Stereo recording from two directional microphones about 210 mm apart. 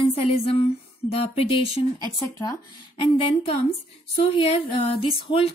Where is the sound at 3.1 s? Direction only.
25° left (ahead or behind).